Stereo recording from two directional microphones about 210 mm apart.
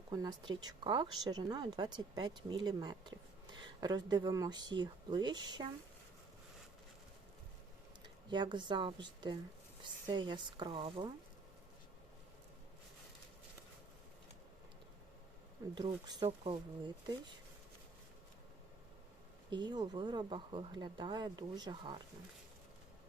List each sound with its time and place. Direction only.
0.1 s speech: 20° right (ahead or behind)
8.3 s speech: 20° right (ahead or behind)
15.7 s speech: 20° right (ahead or behind)
19.5 s speech: 20° right (ahead or behind)